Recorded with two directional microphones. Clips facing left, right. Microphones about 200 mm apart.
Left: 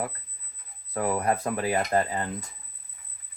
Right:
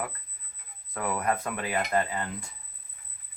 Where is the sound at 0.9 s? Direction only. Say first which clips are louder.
Left 3 dB; 30° left (ahead or behind).